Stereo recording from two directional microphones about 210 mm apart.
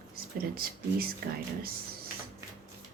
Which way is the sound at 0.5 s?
45° right (ahead or behind).